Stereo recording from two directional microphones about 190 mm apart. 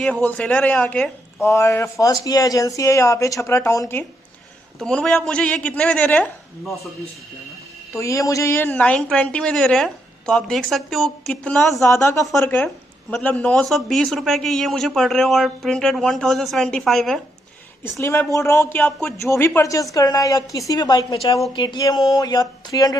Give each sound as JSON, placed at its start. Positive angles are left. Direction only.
{"t": 0.0, "sound": "speech", "side_deg": 10}
{"t": 4.7, "sound": "speech", "side_deg": 5}
{"t": 7.9, "sound": "speech", "side_deg": 15}
{"t": 11.8, "sound": "speech", "side_deg": 15}
{"t": 18.0, "sound": "speech", "side_deg": 15}